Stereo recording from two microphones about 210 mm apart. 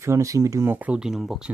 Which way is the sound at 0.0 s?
15° right (ahead or behind).